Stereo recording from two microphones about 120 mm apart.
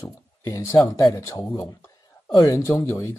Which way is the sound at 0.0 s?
30° left (ahead or behind).